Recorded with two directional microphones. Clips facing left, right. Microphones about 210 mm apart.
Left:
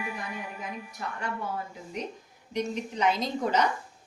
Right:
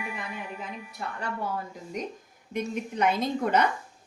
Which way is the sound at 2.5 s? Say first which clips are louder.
Even; 55° right (ahead or behind).